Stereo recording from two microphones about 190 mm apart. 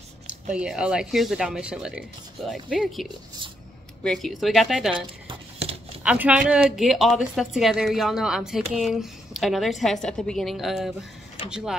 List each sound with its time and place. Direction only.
0.5 s speech: 5° right (ahead or behind)
4.9 s a sound: 30° right (ahead or behind)
6.0 s speech: 5° right (ahead or behind)